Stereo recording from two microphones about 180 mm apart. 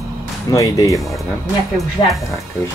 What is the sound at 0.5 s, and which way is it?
Speech, 20° left (ahead or behind).